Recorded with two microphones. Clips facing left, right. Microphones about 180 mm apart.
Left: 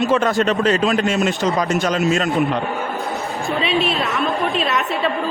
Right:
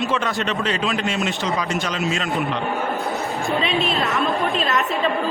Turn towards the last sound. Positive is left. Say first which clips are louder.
# left 1 dB
turn(degrees=0)  # may be behind; listen again after turning